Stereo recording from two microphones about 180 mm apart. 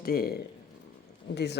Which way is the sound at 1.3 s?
70° left (ahead or behind).